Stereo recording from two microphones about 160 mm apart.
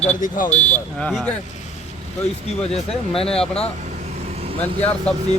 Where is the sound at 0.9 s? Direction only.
5° left (ahead or behind).